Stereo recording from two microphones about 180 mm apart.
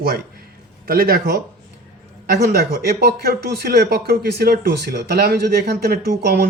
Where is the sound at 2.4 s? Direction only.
65° right (ahead or behind).